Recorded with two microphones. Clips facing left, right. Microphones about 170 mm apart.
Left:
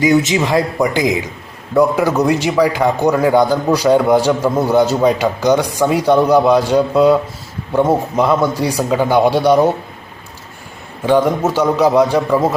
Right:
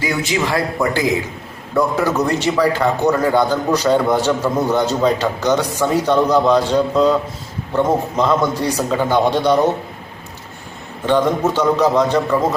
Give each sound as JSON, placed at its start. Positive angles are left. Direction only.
{"t": 0.0, "sound": "a man's voice", "side_deg": 20}
{"t": 11.0, "sound": "a man's voice", "side_deg": 10}